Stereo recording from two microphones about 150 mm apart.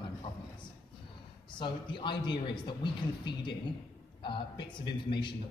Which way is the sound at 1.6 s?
30° left (ahead or behind).